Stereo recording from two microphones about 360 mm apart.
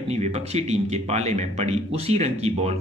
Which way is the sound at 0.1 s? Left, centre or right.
Centre.